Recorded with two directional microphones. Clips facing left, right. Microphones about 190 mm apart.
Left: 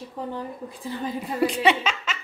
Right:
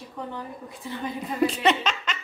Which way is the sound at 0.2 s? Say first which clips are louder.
Left 3 dB; 30° left (ahead or behind).